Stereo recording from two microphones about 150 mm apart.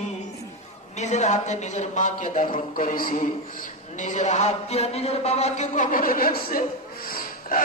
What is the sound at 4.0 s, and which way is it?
A man's voice, 55° left (ahead or behind).